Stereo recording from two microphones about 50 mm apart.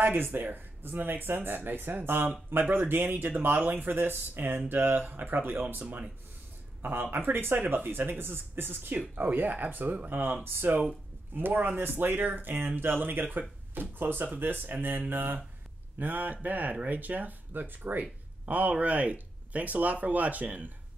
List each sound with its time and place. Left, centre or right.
0.0 s speech: right
9.1 s speech: right